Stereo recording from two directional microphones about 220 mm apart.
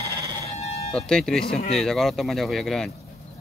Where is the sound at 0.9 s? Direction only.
5° left (ahead or behind).